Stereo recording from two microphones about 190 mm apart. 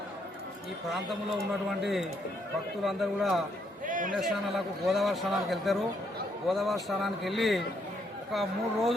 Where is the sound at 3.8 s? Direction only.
45° right (ahead or behind).